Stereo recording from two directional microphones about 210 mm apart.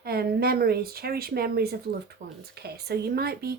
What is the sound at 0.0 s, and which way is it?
Speech, 50° right (ahead or behind).